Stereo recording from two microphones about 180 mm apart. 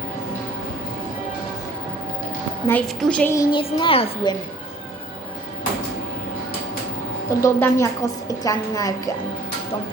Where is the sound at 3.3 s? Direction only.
25° left (ahead or behind).